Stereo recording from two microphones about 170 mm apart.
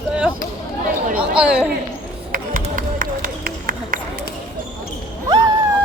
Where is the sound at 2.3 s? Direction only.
55° right (ahead or behind).